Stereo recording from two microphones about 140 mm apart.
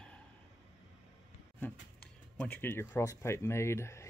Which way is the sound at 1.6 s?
5° left (ahead or behind).